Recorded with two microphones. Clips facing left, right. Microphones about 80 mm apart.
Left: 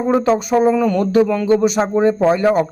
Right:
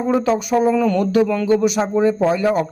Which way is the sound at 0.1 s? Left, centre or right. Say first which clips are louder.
Left 2 dB; left.